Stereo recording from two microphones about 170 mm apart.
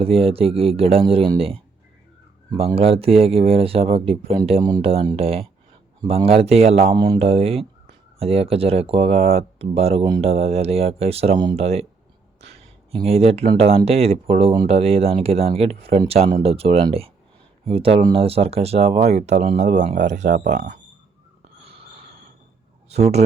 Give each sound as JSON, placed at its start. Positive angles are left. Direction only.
{"t": 0.0, "sound": "speech", "side_deg": -35}
{"t": 6.9, "sound": "speech", "side_deg": -25}
{"t": 7.2, "sound": "speech", "side_deg": -35}
{"t": 12.4, "sound": "a sound", "side_deg": -35}
{"t": 13.6, "sound": "speech", "side_deg": -35}
{"t": 22.9, "sound": "speech", "side_deg": -40}